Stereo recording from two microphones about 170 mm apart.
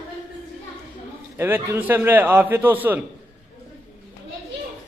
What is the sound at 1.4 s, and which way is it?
A man's voice, 15° right (ahead or behind).